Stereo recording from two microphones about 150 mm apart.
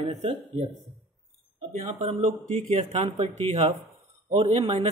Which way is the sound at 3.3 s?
45° right (ahead or behind).